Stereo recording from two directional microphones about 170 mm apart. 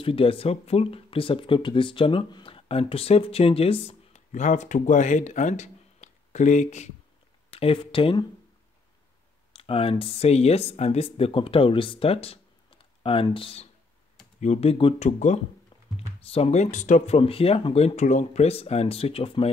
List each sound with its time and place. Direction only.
0.0 s speech: 30° left (ahead or behind)
7.5 s speech: 35° left (ahead or behind)
9.6 s speech: 35° left (ahead or behind)